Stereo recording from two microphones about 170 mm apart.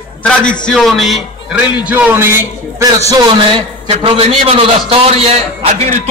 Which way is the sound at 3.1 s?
25° right (ahead or behind).